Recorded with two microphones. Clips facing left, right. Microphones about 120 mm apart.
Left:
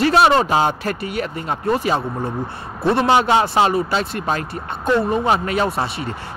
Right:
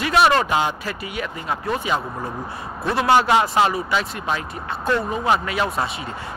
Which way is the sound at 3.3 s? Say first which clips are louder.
Left 2 dB; 25° left (ahead or behind).